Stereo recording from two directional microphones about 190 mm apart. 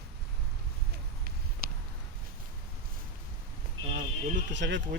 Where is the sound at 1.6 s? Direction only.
50° right (ahead or behind).